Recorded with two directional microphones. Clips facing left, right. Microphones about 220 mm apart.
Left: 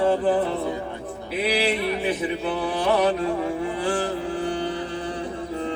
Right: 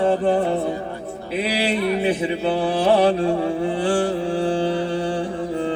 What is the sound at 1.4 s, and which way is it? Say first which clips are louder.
Mantra: right 1 dB; 30° right (ahead or behind).